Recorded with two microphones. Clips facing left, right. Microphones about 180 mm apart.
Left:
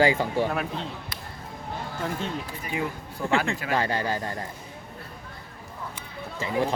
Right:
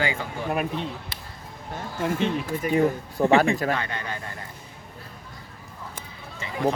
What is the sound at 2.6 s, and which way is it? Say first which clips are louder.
Speech: right 11 dB; 40° right (ahead or behind).